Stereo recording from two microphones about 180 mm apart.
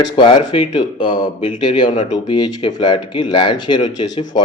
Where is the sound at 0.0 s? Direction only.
25° left (ahead or behind).